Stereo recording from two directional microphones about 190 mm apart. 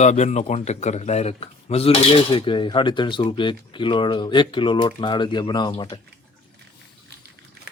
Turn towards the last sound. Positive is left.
turn(degrees=25)  # may be behind; listen again after turning